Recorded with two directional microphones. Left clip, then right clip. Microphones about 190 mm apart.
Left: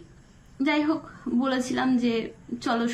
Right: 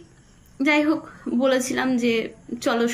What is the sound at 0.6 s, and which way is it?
Speech, 15° left (ahead or behind).